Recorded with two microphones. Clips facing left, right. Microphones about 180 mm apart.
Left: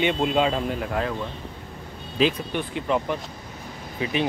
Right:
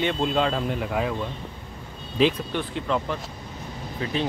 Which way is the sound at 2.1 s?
5° left (ahead or behind).